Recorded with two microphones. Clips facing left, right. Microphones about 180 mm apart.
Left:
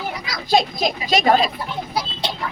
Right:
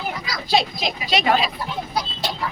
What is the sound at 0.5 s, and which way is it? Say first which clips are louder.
Speech: left 3 dB; 45° left (ahead or behind).